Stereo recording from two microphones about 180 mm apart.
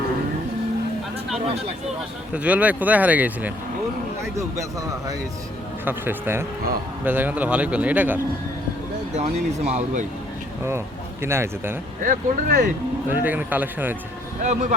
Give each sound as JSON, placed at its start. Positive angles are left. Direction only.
{"t": 2.3, "sound": "a man's voice", "side_deg": -10}
{"t": 5.8, "sound": "a man's voice", "side_deg": -10}
{"t": 9.1, "sound": "speech", "side_deg": -40}
{"t": 10.7, "sound": "speech", "side_deg": -15}
{"t": 12.0, "sound": "speech", "side_deg": -50}
{"t": 13.1, "sound": "a man's voice", "side_deg": -10}
{"t": 14.4, "sound": "speech", "side_deg": -40}